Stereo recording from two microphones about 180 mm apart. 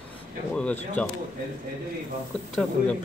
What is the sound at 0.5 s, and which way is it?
Speech, 5° left (ahead or behind).